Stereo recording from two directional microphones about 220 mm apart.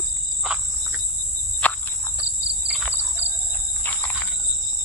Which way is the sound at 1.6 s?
5° left (ahead or behind).